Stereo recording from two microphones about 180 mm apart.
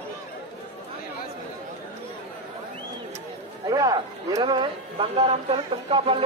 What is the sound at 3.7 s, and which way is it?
Speech, 20° right (ahead or behind).